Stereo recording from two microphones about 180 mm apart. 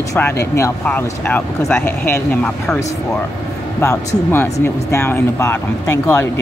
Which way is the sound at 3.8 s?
15° left (ahead or behind).